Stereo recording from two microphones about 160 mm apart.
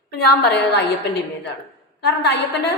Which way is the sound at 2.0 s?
90° left.